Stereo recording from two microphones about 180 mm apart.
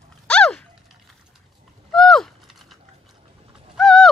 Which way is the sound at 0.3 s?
5° left (ahead or behind).